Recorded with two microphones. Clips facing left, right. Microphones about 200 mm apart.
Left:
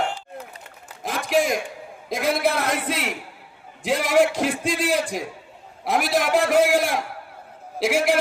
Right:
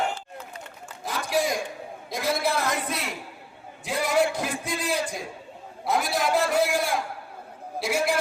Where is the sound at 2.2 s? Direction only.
60° left (ahead or behind).